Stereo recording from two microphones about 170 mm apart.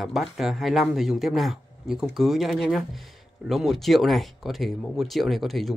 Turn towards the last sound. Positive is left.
turn(degrees=0)  # may be behind; listen again after turning